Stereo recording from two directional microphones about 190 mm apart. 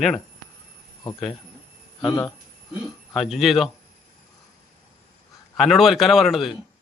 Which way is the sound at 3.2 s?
Centre (ahead or behind).